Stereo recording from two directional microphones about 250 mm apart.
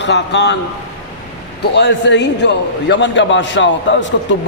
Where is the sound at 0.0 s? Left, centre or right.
Left.